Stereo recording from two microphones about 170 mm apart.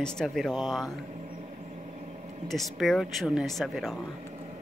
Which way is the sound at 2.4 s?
Centre (ahead or behind).